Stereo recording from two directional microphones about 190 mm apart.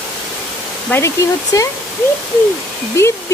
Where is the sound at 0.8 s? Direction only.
15° left (ahead or behind).